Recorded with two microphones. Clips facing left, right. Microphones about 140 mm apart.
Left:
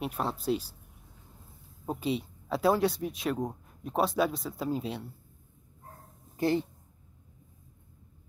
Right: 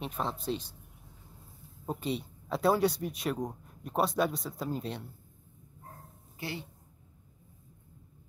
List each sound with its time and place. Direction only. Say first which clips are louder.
0.0 s speech: left 3 dB; 5° left (ahead or behind)
1.9 s speech: left 3 dB; centre (ahead or behind)
6.3 s speech: left 12 dB; 45° left (ahead or behind)